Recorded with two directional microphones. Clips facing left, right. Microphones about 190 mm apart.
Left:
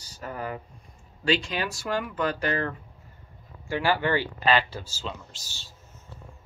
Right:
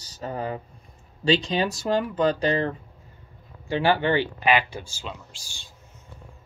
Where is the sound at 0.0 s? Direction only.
25° right (ahead or behind).